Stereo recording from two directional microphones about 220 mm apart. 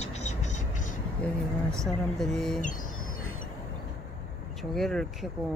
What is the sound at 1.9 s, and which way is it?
Speech, centre (ahead or behind).